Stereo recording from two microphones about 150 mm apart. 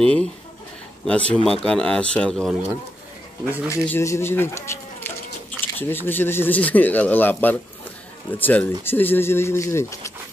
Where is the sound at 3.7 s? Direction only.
20° left (ahead or behind).